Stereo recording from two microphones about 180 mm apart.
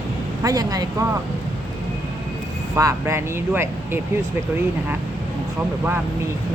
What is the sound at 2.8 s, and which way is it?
Speech, 15° right (ahead or behind).